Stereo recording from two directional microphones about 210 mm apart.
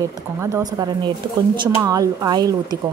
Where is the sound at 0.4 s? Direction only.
15° right (ahead or behind).